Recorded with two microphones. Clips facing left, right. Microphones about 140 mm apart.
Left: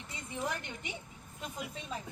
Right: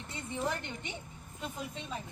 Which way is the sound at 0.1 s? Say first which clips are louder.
Right 2 dB; 25° right (ahead or behind).